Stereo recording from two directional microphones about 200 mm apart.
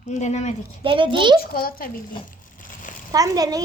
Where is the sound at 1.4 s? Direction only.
45° left (ahead or behind).